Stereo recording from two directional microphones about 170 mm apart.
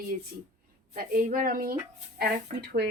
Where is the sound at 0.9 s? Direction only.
55° right (ahead or behind).